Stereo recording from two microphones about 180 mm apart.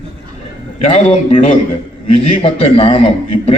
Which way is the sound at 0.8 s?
35° left (ahead or behind).